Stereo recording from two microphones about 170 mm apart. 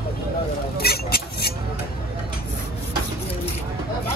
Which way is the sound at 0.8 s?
65° left (ahead or behind).